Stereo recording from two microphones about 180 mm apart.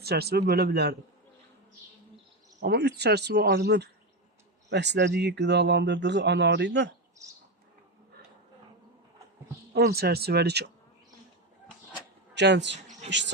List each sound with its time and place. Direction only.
0.0 s speech: 60° right (ahead or behind)
2.6 s a man's voice: 65° right (ahead or behind)
9.7 s speech: 65° right (ahead or behind)
12.3 s a man's voice: 75° right (ahead or behind)